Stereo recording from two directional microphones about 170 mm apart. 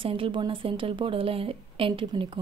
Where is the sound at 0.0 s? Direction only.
30° right (ahead or behind).